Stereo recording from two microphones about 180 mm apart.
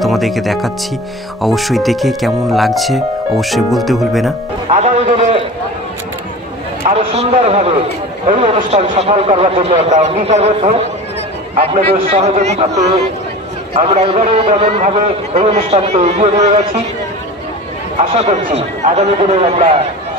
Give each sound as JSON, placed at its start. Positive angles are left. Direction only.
{"t": 0.0, "sound": "speech", "side_deg": 0}
{"t": 4.8, "sound": "a man's voice", "side_deg": -35}
{"t": 7.0, "sound": "a man's voice", "side_deg": -35}
{"t": 18.1, "sound": "speech", "side_deg": -35}